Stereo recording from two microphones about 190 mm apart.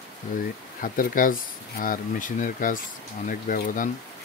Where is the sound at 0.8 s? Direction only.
45° left (ahead or behind).